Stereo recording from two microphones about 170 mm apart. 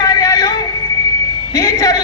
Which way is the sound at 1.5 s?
20° left (ahead or behind).